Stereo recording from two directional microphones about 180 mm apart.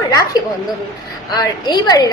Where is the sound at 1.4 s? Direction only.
25° left (ahead or behind).